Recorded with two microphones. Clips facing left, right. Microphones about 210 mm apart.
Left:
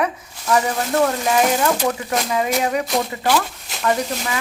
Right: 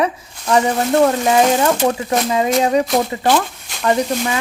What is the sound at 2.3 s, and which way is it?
Speech, 30° right (ahead or behind).